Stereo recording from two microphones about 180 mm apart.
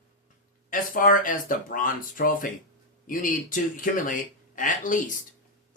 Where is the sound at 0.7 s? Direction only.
50° left (ahead or behind).